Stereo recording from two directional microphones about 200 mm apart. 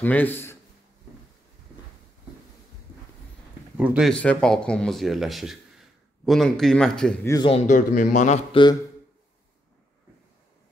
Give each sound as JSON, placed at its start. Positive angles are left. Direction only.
{"t": 0.0, "sound": "a man's voice", "side_deg": 10}
{"t": 3.7, "sound": "speech", "side_deg": -5}
{"t": 4.1, "sound": "speech", "side_deg": 5}
{"t": 7.2, "sound": "a man's voice", "side_deg": 25}